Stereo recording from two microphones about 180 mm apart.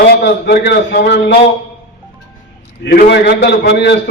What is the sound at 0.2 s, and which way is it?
A man's voice, 65° left (ahead or behind).